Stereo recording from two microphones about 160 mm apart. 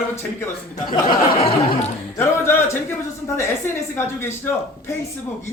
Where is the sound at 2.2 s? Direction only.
15° left (ahead or behind).